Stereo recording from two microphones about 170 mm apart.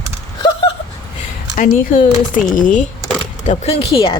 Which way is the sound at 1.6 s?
50° left (ahead or behind).